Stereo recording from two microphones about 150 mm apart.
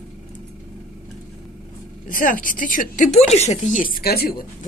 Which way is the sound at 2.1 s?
65° left (ahead or behind).